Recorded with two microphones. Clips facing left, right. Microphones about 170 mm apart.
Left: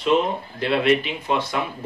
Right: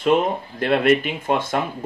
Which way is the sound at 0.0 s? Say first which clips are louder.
Right 2 dB; 50° right (ahead or behind).